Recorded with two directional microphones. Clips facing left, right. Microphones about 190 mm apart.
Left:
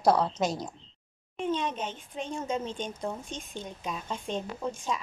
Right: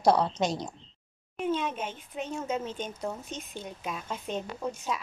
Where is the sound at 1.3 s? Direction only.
5° right (ahead or behind).